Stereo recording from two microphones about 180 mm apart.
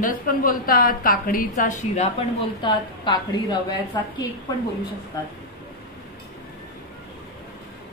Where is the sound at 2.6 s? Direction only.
25° left (ahead or behind).